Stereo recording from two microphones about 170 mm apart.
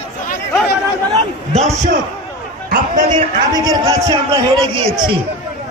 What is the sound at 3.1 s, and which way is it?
A man's voice, 25° right (ahead or behind).